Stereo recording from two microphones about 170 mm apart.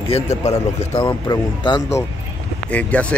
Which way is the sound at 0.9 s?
20° left (ahead or behind).